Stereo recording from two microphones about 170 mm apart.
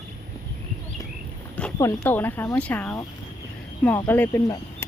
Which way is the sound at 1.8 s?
10° left (ahead or behind).